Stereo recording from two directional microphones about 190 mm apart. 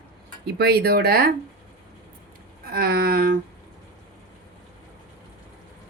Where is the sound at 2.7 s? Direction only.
55° right (ahead or behind).